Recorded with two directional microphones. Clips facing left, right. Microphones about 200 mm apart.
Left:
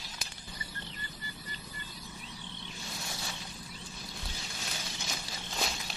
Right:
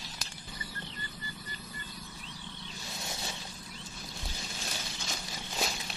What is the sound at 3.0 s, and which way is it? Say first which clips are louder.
Vehicle: right 4 dB; 20° right (ahead or behind).